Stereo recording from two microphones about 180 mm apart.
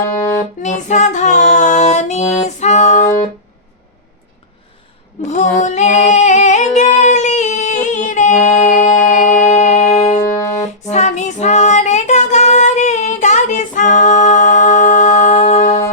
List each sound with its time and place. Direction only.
0.0 s music: 15° left (ahead or behind)
0.6 s music: 40° left (ahead or behind)
5.3 s singing: 40° left (ahead or behind)
10.8 s music: 40° left (ahead or behind)